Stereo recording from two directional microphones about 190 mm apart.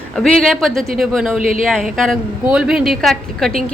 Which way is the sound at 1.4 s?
45° right (ahead or behind).